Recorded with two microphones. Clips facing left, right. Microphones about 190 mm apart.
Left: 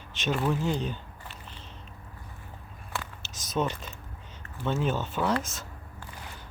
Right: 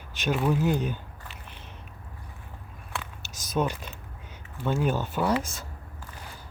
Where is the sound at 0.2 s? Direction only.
Centre (ahead or behind).